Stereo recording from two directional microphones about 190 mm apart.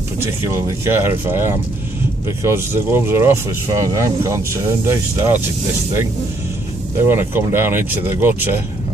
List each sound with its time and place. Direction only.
0.2 s speech: 15° right (ahead or behind)
7.1 s speech: 10° right (ahead or behind)